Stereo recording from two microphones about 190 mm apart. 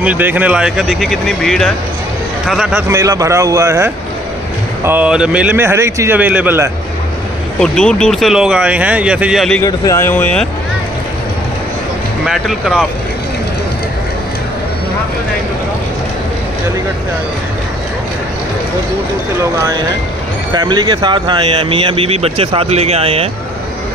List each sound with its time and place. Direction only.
0.0 s speech: 10° right (ahead or behind)
2.9 s a man's voice: 15° right (ahead or behind)
7.6 s speech: 5° left (ahead or behind)
9.6 s a man's voice: 15° left (ahead or behind)
12.3 s speech: 5° right (ahead or behind)
20.5 s speech: 20° right (ahead or behind)